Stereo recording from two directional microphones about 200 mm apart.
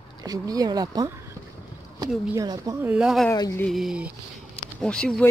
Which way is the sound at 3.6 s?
Centre (ahead or behind).